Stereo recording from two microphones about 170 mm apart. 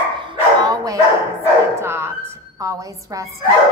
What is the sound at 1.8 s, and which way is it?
A woman's voice, 15° right (ahead or behind).